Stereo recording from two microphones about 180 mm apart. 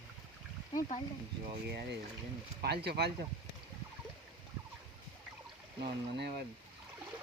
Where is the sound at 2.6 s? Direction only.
65° right (ahead or behind).